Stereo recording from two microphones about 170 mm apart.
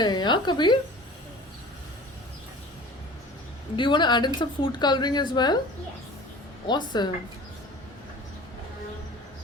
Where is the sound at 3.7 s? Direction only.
30° left (ahead or behind).